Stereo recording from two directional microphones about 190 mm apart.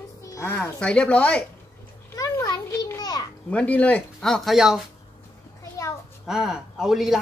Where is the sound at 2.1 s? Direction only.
15° left (ahead or behind).